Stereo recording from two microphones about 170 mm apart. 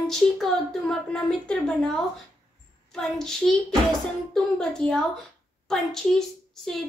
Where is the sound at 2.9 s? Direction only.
5° left (ahead or behind).